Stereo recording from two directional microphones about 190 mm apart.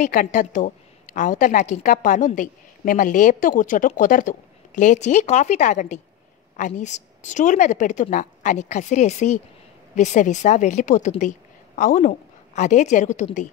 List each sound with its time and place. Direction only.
0.0 s a woman's voice: 45° left (ahead or behind)